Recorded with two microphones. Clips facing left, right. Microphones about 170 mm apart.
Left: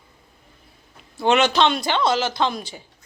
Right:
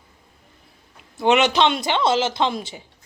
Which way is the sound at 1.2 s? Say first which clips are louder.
Right 1 dB; 20° right (ahead or behind).